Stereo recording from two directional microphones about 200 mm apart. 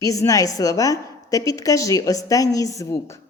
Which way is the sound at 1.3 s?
15° left (ahead or behind).